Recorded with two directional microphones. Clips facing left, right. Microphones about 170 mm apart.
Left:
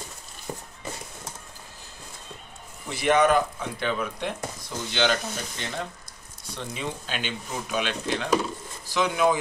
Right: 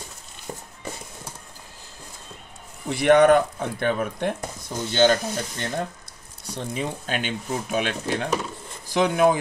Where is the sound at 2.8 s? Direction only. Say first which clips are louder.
Right 6 dB; 60° right (ahead or behind).